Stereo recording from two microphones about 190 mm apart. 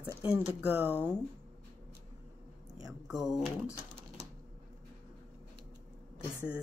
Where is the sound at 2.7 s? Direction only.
5° right (ahead or behind).